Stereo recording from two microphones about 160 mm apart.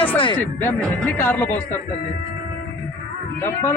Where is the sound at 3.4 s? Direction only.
15° left (ahead or behind).